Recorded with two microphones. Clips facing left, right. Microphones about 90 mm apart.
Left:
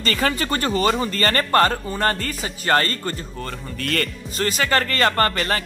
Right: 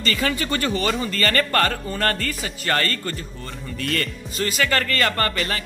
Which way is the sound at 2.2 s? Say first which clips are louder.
Left 2 dB; 35° left (ahead or behind).